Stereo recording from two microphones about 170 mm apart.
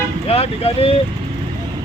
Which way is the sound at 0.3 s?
35° left (ahead or behind).